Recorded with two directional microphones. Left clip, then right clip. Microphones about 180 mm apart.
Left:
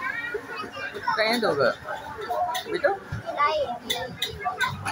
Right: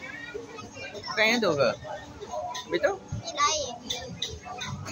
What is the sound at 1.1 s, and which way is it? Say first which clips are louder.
Speech: right 1 dB; 50° right (ahead or behind).